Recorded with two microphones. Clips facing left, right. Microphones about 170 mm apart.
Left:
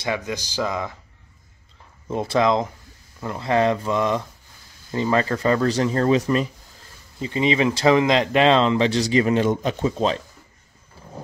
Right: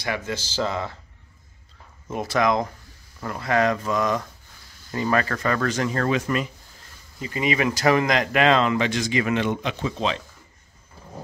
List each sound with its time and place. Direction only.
0.0 s speech: 20° left (ahead or behind)
2.0 s speech: 25° left (ahead or behind)